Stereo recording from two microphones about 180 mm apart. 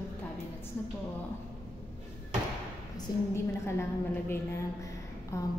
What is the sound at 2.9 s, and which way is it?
A woman's voice, 15° left (ahead or behind).